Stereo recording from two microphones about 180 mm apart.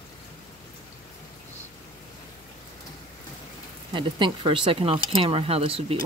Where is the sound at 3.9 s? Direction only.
25° right (ahead or behind).